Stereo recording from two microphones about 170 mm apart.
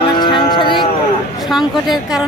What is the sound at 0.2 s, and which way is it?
Cattle, 25° left (ahead or behind).